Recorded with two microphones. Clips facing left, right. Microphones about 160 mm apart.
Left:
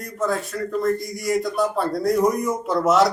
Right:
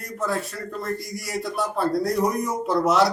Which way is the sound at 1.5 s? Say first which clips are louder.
Left 1 dB; centre (ahead or behind).